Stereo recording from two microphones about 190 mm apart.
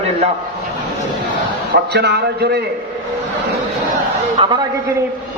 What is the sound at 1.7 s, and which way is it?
Speech, 60° right (ahead or behind).